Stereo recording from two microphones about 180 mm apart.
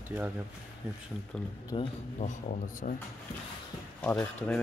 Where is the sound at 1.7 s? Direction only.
30° left (ahead or behind).